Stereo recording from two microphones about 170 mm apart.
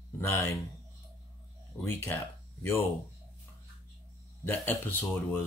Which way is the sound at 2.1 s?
10° left (ahead or behind).